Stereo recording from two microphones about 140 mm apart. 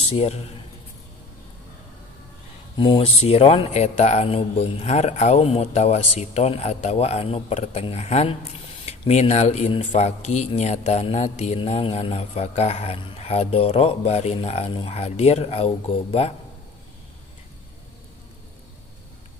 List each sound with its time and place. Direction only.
0.0 s a man's voice: 45° left (ahead or behind)
2.8 s speech: 40° left (ahead or behind)